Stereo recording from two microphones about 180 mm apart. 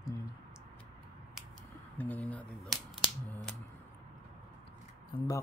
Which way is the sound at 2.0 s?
10° left (ahead or behind).